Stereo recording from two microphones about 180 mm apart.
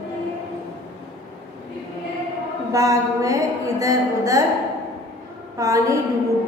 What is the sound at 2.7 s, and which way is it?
A woman's voice, 20° right (ahead or behind).